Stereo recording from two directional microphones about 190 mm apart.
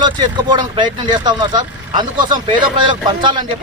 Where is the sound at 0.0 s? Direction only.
25° right (ahead or behind).